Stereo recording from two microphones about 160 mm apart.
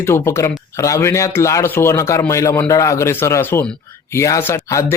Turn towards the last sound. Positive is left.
turn(degrees=20)  # may be behind; listen again after turning